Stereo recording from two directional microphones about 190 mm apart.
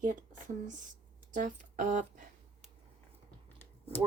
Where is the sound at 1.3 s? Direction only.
40° right (ahead or behind).